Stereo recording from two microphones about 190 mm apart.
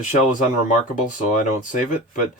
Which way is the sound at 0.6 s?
40° left (ahead or behind).